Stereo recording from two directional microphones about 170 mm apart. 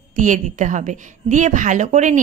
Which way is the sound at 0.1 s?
50° right (ahead or behind).